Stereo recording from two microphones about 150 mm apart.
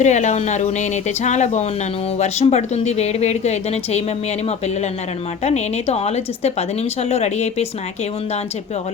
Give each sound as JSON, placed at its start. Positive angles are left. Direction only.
{"t": 0.0, "sound": "a woman's voice", "side_deg": 50}
{"t": 5.4, "sound": "a woman's voice", "side_deg": 45}